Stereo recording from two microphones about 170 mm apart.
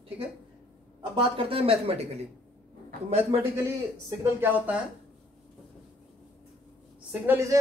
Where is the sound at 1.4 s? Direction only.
35° right (ahead or behind).